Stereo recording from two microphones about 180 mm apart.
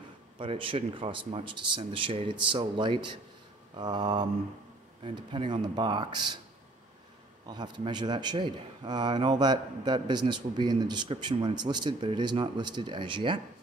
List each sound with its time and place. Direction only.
0.4 s a man's voice: 30° right (ahead or behind)
7.4 s a man's voice: 25° right (ahead or behind)